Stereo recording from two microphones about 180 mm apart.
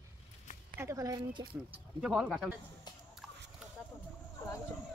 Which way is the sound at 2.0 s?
5° right (ahead or behind).